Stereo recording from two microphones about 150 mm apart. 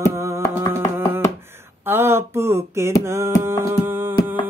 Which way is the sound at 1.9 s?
15° right (ahead or behind).